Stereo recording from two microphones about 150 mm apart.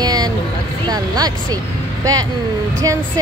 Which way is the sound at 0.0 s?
25° right (ahead or behind).